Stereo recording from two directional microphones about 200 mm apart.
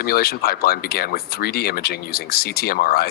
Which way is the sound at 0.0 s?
50° left (ahead or behind).